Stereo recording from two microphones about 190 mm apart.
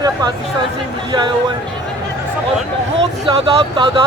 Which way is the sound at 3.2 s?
25° right (ahead or behind).